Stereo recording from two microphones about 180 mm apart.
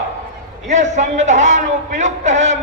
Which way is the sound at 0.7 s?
40° right (ahead or behind).